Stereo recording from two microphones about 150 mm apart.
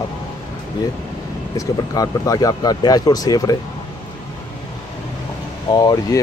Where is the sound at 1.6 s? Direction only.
25° left (ahead or behind).